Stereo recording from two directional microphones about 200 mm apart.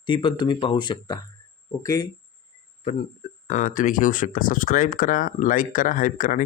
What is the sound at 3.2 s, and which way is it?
Speech, 40° left (ahead or behind).